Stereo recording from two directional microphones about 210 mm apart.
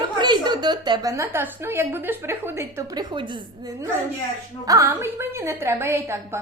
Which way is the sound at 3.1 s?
25° right (ahead or behind).